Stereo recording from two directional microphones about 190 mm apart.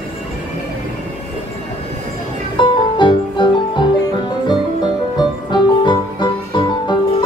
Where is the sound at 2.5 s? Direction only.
25° left (ahead or behind).